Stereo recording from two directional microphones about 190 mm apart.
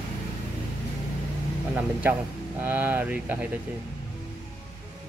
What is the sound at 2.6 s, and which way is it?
Speech, 10° right (ahead or behind).